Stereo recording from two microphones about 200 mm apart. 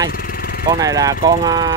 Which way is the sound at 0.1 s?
45° left (ahead or behind).